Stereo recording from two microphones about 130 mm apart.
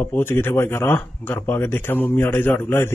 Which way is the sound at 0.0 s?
15° left (ahead or behind).